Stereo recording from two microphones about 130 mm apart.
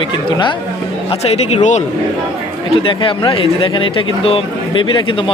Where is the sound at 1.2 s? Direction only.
55° left (ahead or behind).